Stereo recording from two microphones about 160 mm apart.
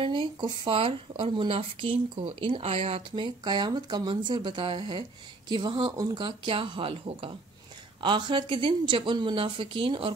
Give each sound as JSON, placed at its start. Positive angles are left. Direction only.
{"t": 0.0, "sound": "speech", "side_deg": -30}
{"t": 3.4, "sound": "speech", "side_deg": -25}